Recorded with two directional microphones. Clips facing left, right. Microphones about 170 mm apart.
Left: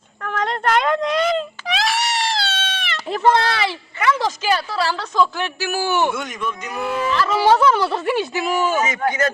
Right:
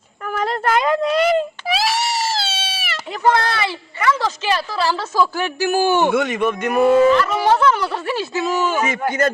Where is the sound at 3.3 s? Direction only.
20° left (ahead or behind).